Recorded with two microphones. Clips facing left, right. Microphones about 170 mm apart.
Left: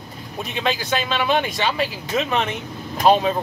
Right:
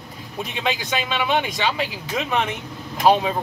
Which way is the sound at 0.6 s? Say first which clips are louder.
Left 2 dB; 15° right (ahead or behind).